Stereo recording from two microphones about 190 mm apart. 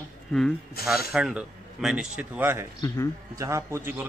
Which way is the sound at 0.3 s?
5° left (ahead or behind).